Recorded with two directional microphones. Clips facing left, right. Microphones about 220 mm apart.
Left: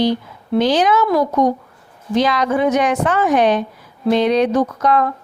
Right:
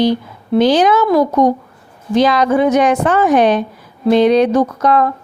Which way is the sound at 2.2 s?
35° right (ahead or behind).